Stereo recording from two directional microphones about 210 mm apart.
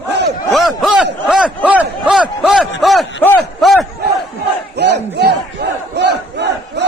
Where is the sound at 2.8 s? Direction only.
Centre (ahead or behind).